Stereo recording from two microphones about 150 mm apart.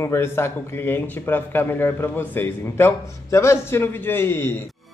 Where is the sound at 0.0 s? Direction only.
15° left (ahead or behind).